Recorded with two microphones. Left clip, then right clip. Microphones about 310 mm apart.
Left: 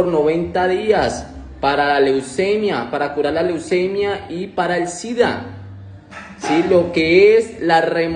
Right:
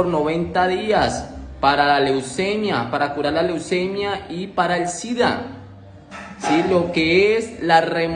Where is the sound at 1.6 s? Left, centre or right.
Centre.